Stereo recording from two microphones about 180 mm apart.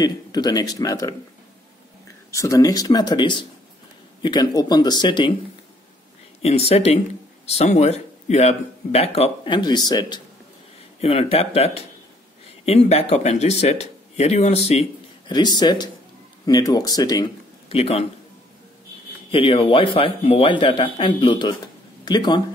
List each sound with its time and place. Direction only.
0.0 s a man's voice: 20° left (ahead or behind)
2.3 s a man's voice: 20° left (ahead or behind)
6.4 s speech: 35° left (ahead or behind)
17.7 s speech: 35° left (ahead or behind)
19.3 s a man's voice: 30° left (ahead or behind)